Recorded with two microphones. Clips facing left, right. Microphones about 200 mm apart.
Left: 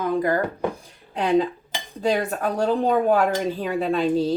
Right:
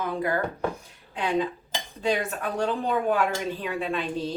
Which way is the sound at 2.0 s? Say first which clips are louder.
Left 4 dB; 40° left (ahead or behind).